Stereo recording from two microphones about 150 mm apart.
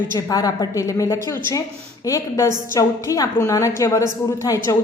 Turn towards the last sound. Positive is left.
turn(degrees=20)  # may be behind; listen again after turning